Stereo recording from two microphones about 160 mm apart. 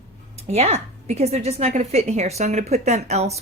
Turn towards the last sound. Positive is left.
turn(degrees=-45)  # may be behind; listen again after turning